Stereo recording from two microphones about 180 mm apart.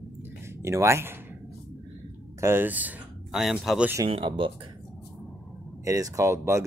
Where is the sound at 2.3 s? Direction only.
15° right (ahead or behind).